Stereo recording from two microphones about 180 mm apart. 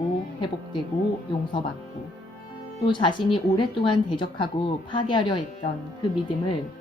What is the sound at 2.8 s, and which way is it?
Speech, 25° left (ahead or behind).